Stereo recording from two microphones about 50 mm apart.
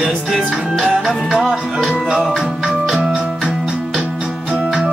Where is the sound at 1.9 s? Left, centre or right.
Centre.